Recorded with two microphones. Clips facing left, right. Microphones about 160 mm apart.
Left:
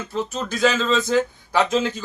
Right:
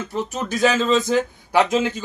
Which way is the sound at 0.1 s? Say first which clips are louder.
Even; 15° right (ahead or behind).